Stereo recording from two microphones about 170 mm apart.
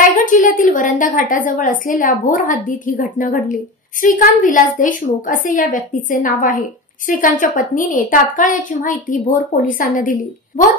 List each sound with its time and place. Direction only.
0.2 s a woman's voice: 50° left (ahead or behind)